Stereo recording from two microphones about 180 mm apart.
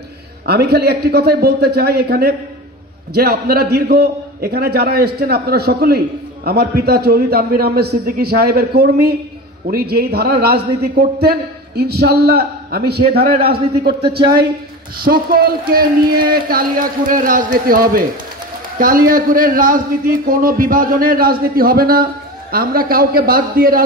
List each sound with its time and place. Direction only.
0.5 s a man's voice: 65° right (ahead or behind)
14.2 s a woman's voice: 25° right (ahead or behind)
15.0 s a man's voice: 55° right (ahead or behind)